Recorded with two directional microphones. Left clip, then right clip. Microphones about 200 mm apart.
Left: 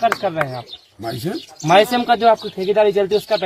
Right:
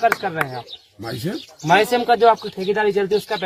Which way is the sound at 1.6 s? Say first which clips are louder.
Left 2 dB; 25° left (ahead or behind).